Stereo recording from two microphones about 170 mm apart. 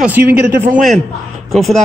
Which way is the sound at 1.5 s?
Centre (ahead or behind).